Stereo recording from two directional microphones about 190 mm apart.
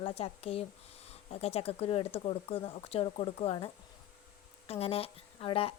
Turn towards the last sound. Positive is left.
turn(degrees=30)  # may be behind; listen again after turning